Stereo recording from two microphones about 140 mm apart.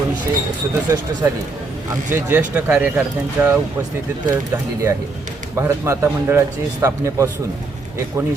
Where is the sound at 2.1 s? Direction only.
15° right (ahead or behind).